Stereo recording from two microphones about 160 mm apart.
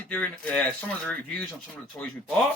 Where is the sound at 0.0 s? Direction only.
10° left (ahead or behind).